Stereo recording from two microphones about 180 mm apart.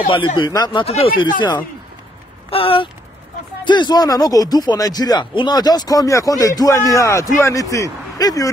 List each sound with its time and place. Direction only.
0.1 s speech: 30° left (ahead or behind)
2.5 s speech: 30° left (ahead or behind)